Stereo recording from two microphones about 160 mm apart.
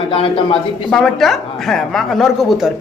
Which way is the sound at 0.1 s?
35° left (ahead or behind).